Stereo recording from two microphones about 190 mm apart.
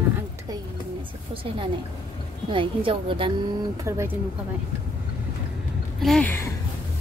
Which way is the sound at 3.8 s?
15° right (ahead or behind).